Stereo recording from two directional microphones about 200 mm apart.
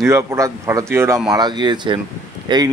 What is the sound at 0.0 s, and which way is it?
A man's voice, 15° right (ahead or behind).